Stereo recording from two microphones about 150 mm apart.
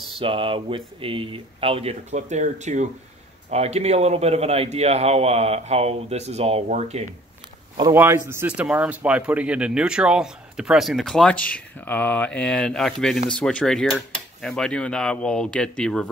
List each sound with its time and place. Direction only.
0.2 s a man's voice: 35° right (ahead or behind)
7.9 s speech: 15° right (ahead or behind); by 16.1 s 5° left (ahead or behind)